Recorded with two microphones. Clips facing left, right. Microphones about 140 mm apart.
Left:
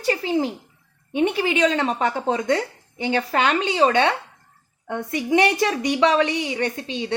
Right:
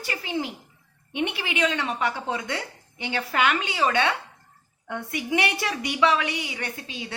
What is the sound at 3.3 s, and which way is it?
Speech, 30° left (ahead or behind).